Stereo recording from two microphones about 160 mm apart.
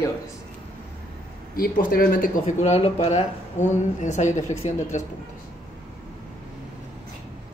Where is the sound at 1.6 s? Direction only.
65° left (ahead or behind); by 5.0 s 45° left (ahead or behind).